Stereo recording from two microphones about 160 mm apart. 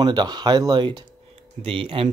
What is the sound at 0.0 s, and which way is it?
Speech, 25° right (ahead or behind).